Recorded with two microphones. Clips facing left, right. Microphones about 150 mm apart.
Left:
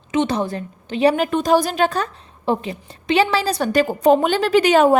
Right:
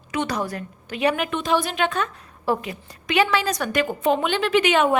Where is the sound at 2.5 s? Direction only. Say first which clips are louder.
Left 3 dB; 25° left (ahead or behind).